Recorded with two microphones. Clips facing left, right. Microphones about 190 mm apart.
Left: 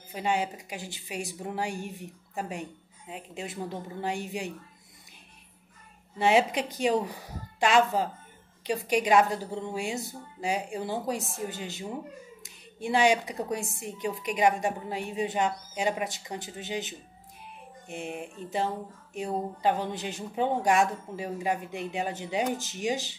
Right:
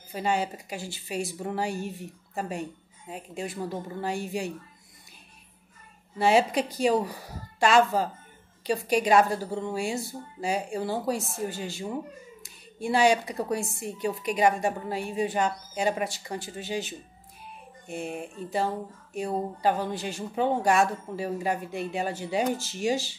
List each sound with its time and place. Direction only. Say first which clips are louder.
0.1 s a woman's voice: right 1 dB; 15° left (ahead or behind)
6.1 s a woman's voice: right 1 dB; 20° left (ahead or behind)
19.9 s a woman's voice: right 2 dB; 20° left (ahead or behind)